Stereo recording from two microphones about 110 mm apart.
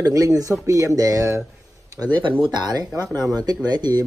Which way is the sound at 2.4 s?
40° right (ahead or behind).